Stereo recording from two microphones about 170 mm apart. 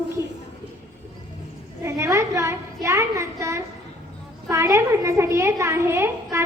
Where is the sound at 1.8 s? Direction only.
15° right (ahead or behind).